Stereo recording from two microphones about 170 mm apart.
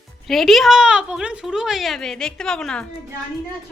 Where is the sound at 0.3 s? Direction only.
Centre (ahead or behind).